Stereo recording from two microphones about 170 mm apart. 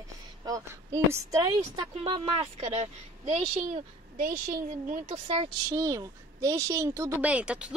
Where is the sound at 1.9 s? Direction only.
30° right (ahead or behind); by 5.4 s 50° right (ahead or behind).